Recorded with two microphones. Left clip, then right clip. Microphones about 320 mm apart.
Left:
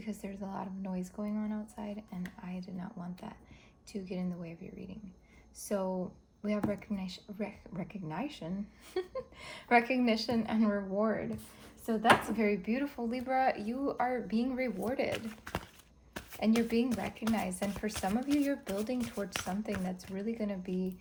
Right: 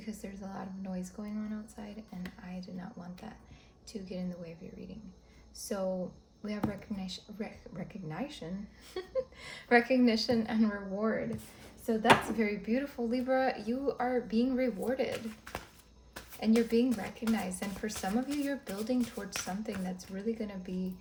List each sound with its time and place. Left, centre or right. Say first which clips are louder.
0.0 s speech: left 2 dB; left
5.5 s speech: even; centre
12.4 s speech: left 1 dB; left